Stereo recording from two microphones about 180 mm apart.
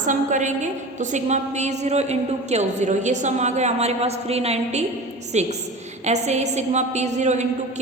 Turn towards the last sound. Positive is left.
turn(degrees=-40)  # may be behind; listen again after turning